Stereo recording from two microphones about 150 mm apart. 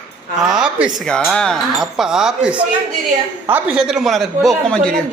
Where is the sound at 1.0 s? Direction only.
5° left (ahead or behind); by 3.8 s 15° right (ahead or behind).